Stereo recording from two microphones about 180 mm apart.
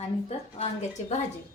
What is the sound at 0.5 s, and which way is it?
Speech, 35° left (ahead or behind).